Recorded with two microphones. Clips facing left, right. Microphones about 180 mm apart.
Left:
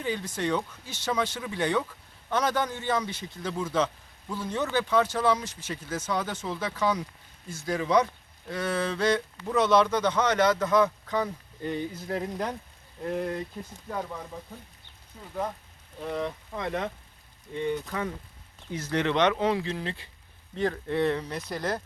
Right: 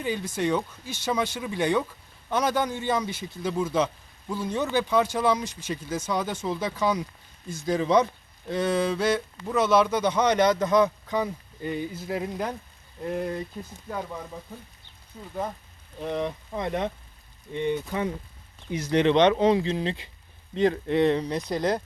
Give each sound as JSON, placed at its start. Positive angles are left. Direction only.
{"t": 0.0, "sound": "speech", "side_deg": -10}
{"t": 16.0, "sound": "speech", "side_deg": -20}